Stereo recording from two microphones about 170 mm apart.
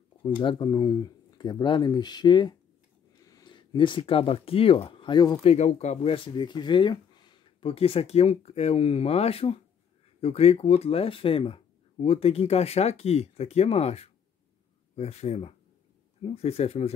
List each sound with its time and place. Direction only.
0.2 s speech: 30° left (ahead or behind)